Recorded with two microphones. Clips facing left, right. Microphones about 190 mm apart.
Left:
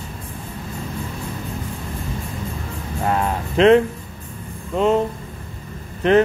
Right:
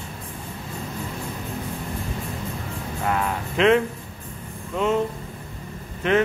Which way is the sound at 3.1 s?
35° left (ahead or behind).